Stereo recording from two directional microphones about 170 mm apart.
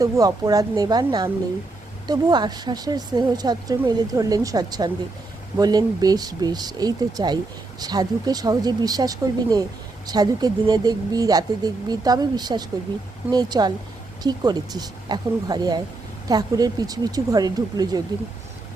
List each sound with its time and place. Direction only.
0.0 s a woman's voice: 20° right (ahead or behind)